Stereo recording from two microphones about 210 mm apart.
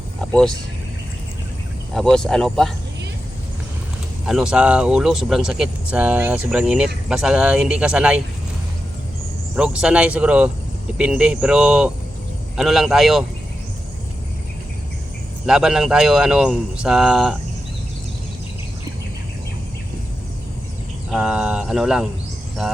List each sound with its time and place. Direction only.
0.2 s a sound: 5° left (ahead or behind)
1.9 s speech: centre (ahead or behind)
4.3 s speech: 5° right (ahead or behind)
9.6 s speech: 5° right (ahead or behind)
15.4 s speech: 5° right (ahead or behind)
21.1 s speech: 5° right (ahead or behind)